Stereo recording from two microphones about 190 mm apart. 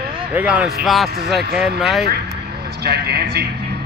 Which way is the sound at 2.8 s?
60° right (ahead or behind).